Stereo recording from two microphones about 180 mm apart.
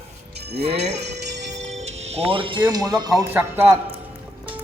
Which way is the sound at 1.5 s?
40° right (ahead or behind).